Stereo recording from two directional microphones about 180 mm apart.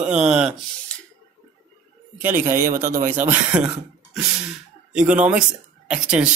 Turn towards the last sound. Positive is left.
turn(degrees=-5)  # may be behind; listen again after turning